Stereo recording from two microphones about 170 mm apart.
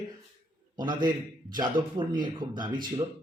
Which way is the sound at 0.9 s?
25° right (ahead or behind).